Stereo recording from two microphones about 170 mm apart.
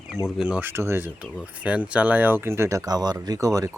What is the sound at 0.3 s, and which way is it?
Speech, 5° right (ahead or behind).